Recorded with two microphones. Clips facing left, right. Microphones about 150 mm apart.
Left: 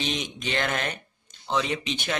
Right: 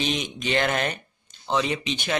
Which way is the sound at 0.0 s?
5° right (ahead or behind).